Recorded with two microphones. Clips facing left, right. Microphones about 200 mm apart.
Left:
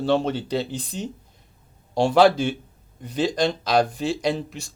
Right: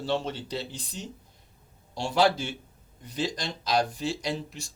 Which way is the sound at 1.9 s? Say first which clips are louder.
Left 8 dB; 60° left (ahead or behind).